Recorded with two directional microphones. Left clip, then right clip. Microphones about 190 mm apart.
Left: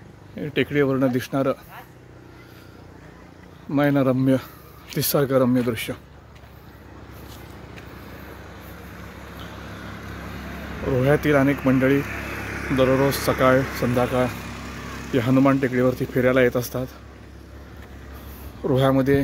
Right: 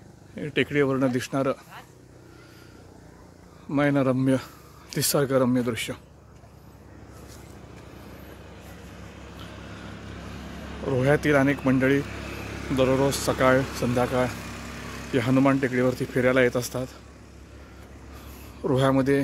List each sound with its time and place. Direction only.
0.4 s a man's voice: 5° right (ahead or behind)
3.7 s a man's voice: 5° right (ahead or behind)
9.5 s vehicle: 15° right (ahead or behind)
11.6 s a man's voice: centre (ahead or behind)
12.0 s vehicle: 35° right (ahead or behind)
12.7 s a man's voice: centre (ahead or behind)
14.3 s vehicle: 50° right (ahead or behind)
15.1 s a man's voice: centre (ahead or behind)
18.7 s a man's voice: 5° right (ahead or behind)